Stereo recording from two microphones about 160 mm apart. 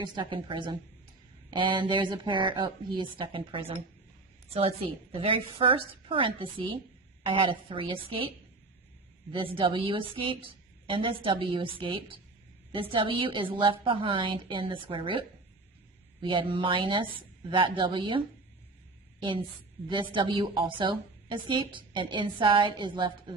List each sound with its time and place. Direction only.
0.0 s a woman's voice: 30° right (ahead or behind)
9.3 s a woman's voice: 35° right (ahead or behind)
16.2 s a woman's voice: 30° right (ahead or behind)
19.9 s a woman's voice: 30° right (ahead or behind)